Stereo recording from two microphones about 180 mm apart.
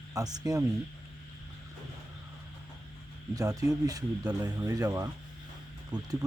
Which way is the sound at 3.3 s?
20° right (ahead or behind).